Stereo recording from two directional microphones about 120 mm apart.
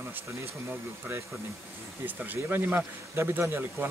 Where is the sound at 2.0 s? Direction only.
15° right (ahead or behind).